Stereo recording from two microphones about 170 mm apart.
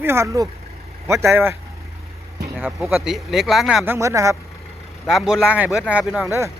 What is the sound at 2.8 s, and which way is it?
Speech, centre (ahead or behind).